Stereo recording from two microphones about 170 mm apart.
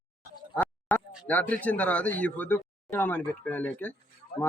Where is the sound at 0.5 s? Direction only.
5° left (ahead or behind).